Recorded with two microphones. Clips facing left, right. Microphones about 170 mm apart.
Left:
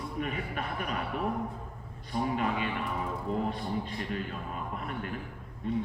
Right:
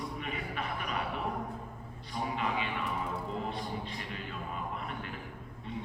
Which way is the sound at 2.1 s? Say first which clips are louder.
Left 4 dB; 45° left (ahead or behind).